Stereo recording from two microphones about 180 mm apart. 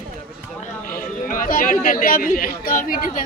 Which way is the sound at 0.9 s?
50° left (ahead or behind).